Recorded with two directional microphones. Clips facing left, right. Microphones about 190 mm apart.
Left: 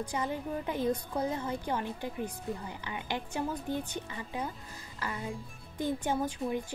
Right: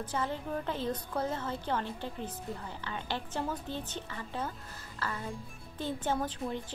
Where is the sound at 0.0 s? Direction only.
15° left (ahead or behind).